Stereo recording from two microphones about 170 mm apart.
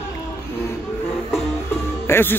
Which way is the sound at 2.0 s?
15° left (ahead or behind).